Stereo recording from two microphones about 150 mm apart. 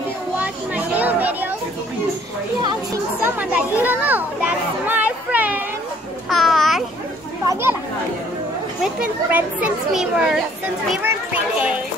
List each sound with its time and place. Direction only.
0.4 s children playing: 10° right (ahead or behind)
2.6 s speech: 25° right (ahead or behind)
3.3 s children playing: 10° right (ahead or behind)
6.3 s a sound: centre (ahead or behind)
8.8 s a child's voice: 10° right (ahead or behind)